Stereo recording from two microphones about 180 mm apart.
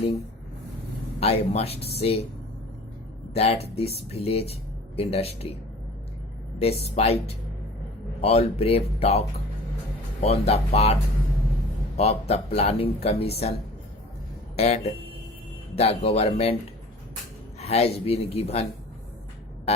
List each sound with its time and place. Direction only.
1.2 s speech: 35° left (ahead or behind)
3.3 s speech: 35° left (ahead or behind)
6.6 s speech: 35° left (ahead or behind)
11.9 s speech: 35° left (ahead or behind)
14.5 s speech: 35° left (ahead or behind)
17.6 s a man's voice: 35° left (ahead or behind)